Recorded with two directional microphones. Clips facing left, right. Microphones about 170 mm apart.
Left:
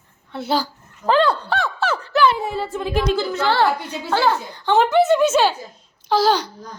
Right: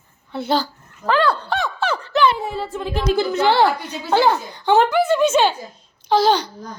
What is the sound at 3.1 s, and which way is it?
A woman's voice, 15° right (ahead or behind).